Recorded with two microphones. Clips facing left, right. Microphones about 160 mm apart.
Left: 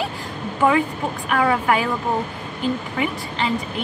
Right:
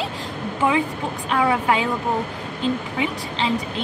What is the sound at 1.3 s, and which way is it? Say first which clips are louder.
Speech: left 1 dB; 25° right (ahead or behind).